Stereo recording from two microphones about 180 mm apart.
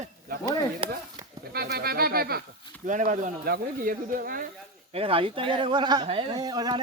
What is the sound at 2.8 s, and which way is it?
Speech, 45° right (ahead or behind).